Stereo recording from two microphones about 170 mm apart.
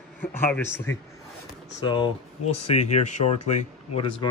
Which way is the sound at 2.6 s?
40° left (ahead or behind).